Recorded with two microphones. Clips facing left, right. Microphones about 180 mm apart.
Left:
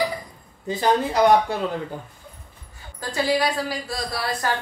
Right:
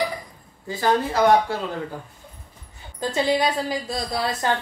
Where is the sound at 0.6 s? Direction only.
20° left (ahead or behind).